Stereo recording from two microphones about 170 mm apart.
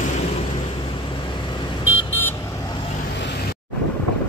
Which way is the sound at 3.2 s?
80° left.